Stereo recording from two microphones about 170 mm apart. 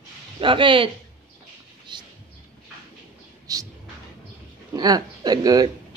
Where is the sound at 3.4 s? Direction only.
20° right (ahead or behind).